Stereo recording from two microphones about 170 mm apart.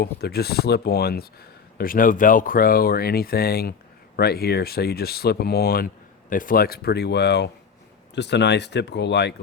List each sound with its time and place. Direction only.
0.0 s speech: 70° left (ahead or behind)
1.8 s speech: 55° left (ahead or behind); by 9.3 s 85° left